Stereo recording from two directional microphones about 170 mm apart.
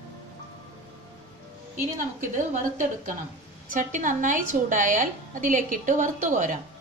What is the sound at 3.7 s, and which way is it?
A woman's voice, 50° right (ahead or behind).